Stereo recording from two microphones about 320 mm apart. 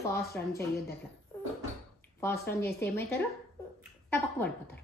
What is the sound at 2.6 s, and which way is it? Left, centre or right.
A woman's voice, centre.